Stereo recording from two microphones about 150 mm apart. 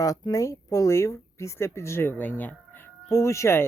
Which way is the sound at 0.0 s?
20° left (ahead or behind).